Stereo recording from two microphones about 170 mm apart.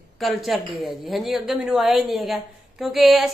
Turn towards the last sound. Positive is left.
turn(degrees=0)  # may be behind; listen again after turning